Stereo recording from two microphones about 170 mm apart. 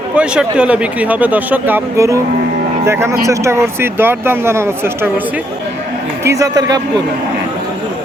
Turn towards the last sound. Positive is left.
turn(degrees=-20)  # may be behind; listen again after turning